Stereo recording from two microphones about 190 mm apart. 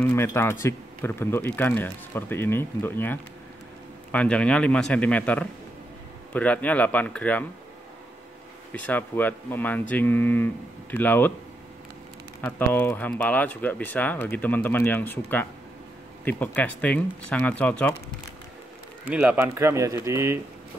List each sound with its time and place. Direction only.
0.0 s a man's voice: 10° left (ahead or behind)
8.7 s speech: 10° left (ahead or behind)
12.4 s speech: 10° left (ahead or behind)
19.0 s speech: 10° right (ahead or behind)